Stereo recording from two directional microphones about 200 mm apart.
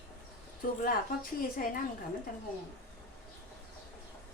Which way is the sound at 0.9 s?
45° left (ahead or behind).